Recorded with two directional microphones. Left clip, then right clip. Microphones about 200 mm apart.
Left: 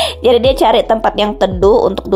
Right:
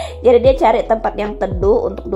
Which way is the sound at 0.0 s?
20° left (ahead or behind).